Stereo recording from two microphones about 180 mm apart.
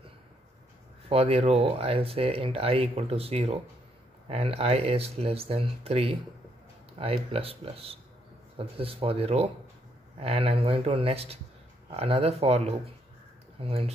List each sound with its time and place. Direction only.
1.0 s speech: 35° right (ahead or behind)